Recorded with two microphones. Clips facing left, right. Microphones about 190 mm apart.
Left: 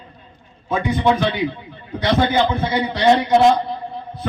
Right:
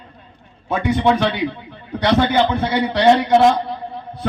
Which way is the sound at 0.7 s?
70° right (ahead or behind).